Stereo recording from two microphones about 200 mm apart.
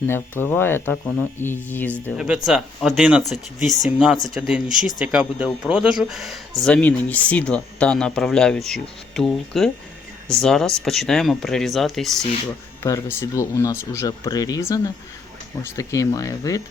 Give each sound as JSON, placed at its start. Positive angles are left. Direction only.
{"t": 0.1, "sound": "speech", "side_deg": 10}
{"t": 2.1, "sound": "speech", "side_deg": -5}
{"t": 12.8, "sound": "speech", "side_deg": 10}